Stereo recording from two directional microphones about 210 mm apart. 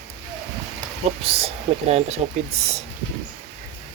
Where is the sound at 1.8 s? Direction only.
30° right (ahead or behind).